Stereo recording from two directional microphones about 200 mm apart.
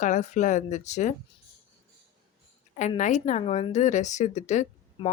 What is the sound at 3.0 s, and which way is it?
Speech, 35° left (ahead or behind).